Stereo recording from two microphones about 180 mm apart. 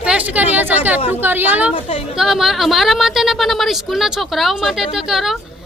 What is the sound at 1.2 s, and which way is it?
A woman's voice, 10° right (ahead or behind).